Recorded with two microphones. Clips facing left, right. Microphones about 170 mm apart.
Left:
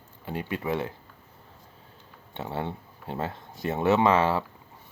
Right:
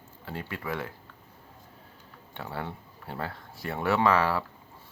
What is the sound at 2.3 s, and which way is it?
Speech, 20° left (ahead or behind).